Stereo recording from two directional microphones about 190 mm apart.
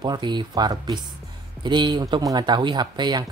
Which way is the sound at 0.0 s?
25° right (ahead or behind).